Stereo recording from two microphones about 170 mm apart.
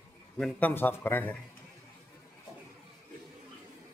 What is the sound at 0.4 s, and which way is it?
A man's voice, 5° left (ahead or behind).